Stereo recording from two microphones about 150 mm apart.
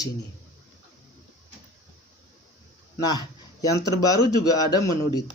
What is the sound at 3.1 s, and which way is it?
A man's voice, 25° left (ahead or behind).